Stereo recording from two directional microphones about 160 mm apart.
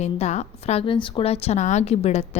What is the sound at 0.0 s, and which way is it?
Speech, 45° left (ahead or behind).